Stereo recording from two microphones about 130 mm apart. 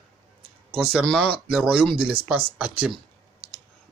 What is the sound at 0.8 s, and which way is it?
Speech, centre (ahead or behind).